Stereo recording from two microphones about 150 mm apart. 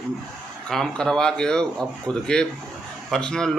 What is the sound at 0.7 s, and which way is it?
A man's voice, 5° left (ahead or behind).